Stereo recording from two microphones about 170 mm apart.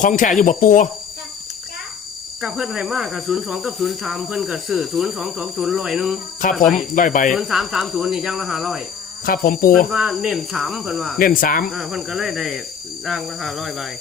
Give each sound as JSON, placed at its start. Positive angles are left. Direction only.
{"t": 0.0, "sound": "speech", "side_deg": 50}
{"t": 2.4, "sound": "speech", "side_deg": 0}
{"t": 6.4, "sound": "speech", "side_deg": 50}
{"t": 7.3, "sound": "speech", "side_deg": 0}
{"t": 9.2, "sound": "speech", "side_deg": 55}
{"t": 9.9, "sound": "speech", "side_deg": 0}
{"t": 11.2, "sound": "speech", "side_deg": 55}
{"t": 11.7, "sound": "speech", "side_deg": 0}